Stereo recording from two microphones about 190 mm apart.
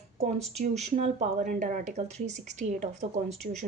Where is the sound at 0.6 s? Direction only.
35° right (ahead or behind).